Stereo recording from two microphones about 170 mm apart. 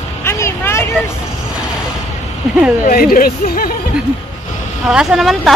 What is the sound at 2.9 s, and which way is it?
Speech, 55° left (ahead or behind).